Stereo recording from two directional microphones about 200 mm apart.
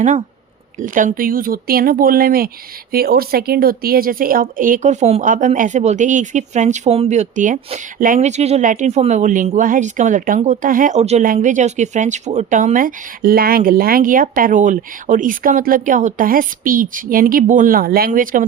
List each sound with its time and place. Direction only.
0.8 s a woman's voice: 40° right (ahead or behind)